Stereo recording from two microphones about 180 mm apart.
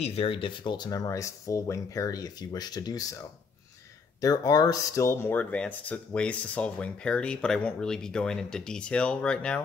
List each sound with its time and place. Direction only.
0.0 s speech: 35° left (ahead or behind)
4.2 s speech: 20° left (ahead or behind); by 9.6 s 5° left (ahead or behind)